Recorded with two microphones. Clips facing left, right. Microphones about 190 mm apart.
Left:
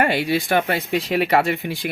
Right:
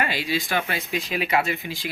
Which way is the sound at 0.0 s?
55° left (ahead or behind).